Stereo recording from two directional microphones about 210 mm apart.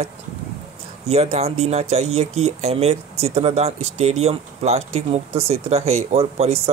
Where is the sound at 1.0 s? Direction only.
30° right (ahead or behind).